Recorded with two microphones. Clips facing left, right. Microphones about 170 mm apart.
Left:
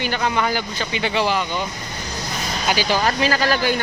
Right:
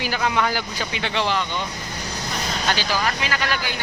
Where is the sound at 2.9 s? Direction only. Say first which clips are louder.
Left 5 dB; 35° left (ahead or behind).